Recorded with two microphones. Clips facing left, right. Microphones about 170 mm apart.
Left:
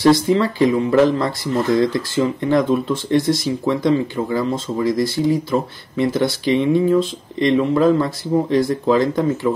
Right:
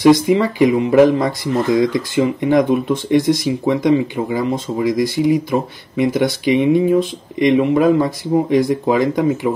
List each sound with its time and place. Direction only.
0.0 s speech: 15° right (ahead or behind)